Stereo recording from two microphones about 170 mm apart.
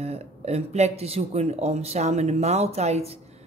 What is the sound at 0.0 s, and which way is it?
Speech, 40° right (ahead or behind).